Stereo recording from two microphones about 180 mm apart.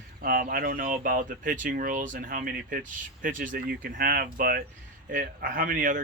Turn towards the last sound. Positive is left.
turn(degrees=-45)  # may be behind; listen again after turning